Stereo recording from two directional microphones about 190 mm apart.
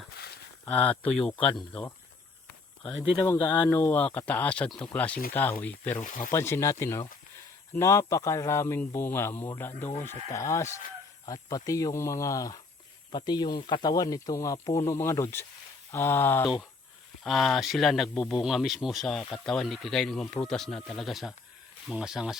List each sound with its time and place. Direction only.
0.6 s speech: 10° left (ahead or behind)
3.3 s speech: 25° left (ahead or behind)
3.7 s speech: 10° left (ahead or behind)
6.0 s speech: 45° left (ahead or behind)
6.3 s speech: 15° left (ahead or behind)
17.2 s speech: centre (ahead or behind)